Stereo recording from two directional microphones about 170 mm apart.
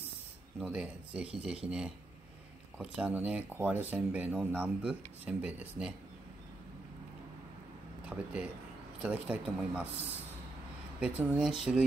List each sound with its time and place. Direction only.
0.6 s speech: 5° right (ahead or behind)
8.0 s speech: 5° right (ahead or behind)
11.0 s speech: 5° right (ahead or behind)